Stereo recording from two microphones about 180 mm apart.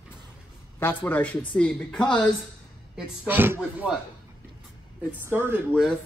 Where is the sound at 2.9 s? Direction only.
10° right (ahead or behind).